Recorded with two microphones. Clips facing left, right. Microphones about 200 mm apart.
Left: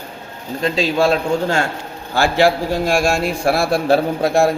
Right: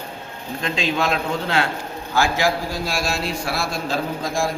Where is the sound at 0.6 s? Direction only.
40° left (ahead or behind).